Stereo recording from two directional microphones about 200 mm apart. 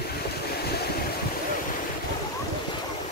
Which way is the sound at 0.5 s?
55° left (ahead or behind).